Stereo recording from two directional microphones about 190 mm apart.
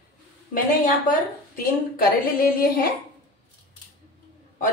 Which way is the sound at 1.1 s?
50° left (ahead or behind).